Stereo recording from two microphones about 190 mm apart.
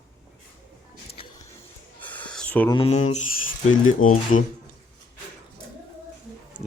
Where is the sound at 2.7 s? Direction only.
30° left (ahead or behind).